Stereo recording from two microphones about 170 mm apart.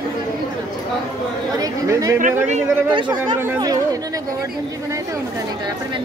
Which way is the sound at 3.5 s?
20° right (ahead or behind).